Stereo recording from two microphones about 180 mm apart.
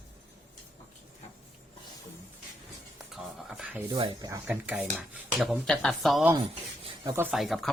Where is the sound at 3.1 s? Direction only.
Centre (ahead or behind).